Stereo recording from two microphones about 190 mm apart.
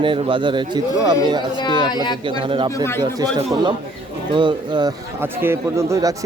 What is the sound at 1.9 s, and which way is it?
Speech, 20° left (ahead or behind).